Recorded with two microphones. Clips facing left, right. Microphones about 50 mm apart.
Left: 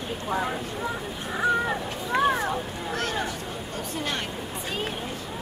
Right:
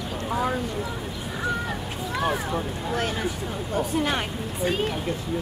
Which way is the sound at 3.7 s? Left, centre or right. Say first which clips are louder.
Right 7 dB; centre.